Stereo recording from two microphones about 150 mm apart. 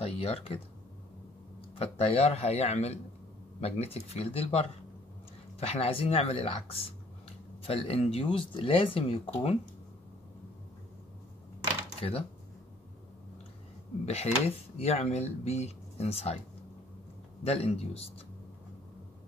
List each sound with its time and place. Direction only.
0.0 s speech: 40° left (ahead or behind)
1.8 s speech: 40° left (ahead or behind)
12.0 s speech: 40° left (ahead or behind)
14.0 s speech: 45° left (ahead or behind)
17.4 s speech: 40° left (ahead or behind)